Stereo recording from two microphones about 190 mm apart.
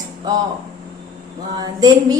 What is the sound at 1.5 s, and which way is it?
Speech, 20° right (ahead or behind).